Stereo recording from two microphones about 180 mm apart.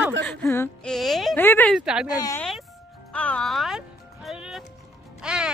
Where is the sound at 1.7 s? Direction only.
5° right (ahead or behind).